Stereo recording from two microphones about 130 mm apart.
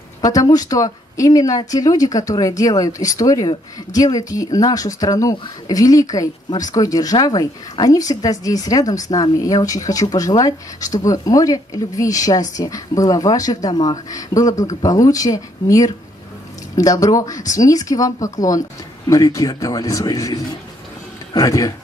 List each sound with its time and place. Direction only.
0.2 s speech: 30° left (ahead or behind)